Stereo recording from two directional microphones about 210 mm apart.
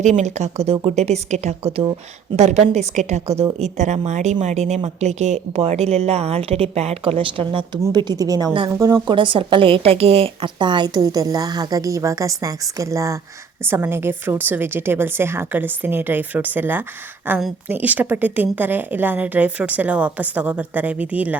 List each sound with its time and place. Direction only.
0.0 s a woman's voice: 35° right (ahead or behind); by 21.3 s 5° right (ahead or behind)